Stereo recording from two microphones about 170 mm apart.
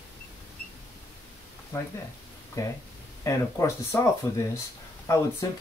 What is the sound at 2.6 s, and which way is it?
Speech, 20° left (ahead or behind).